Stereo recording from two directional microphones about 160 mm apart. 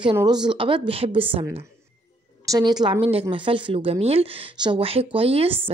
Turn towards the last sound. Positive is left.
turn(degrees=-35)  # may be behind; listen again after turning